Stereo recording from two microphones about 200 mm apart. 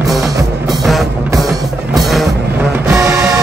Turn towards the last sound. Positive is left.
turn(degrees=-15)  # may be behind; listen again after turning